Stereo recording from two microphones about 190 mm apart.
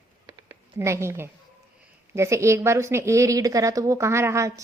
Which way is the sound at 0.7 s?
15° right (ahead or behind).